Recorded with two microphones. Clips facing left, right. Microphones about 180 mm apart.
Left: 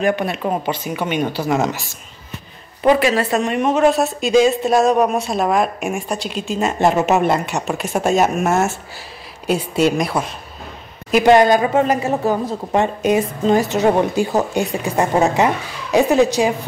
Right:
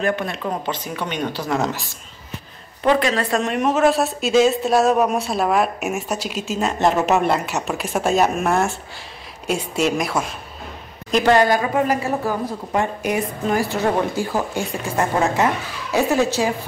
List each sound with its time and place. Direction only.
0.0 s speech: 15° left (ahead or behind)
2.8 s speech: 10° left (ahead or behind)
11.2 s a woman's voice: 20° left (ahead or behind)